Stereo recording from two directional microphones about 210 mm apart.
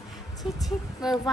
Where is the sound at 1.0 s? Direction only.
Centre (ahead or behind).